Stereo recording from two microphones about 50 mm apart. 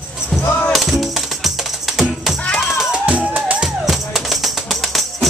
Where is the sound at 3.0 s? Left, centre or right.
Right.